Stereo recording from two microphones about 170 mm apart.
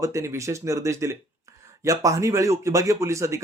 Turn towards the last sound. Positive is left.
turn(degrees=-15)  # may be behind; listen again after turning